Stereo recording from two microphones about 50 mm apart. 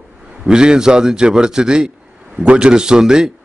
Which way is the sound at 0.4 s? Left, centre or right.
Centre.